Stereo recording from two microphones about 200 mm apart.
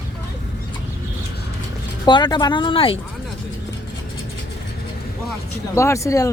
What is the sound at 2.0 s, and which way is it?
Speech, 20° left (ahead or behind).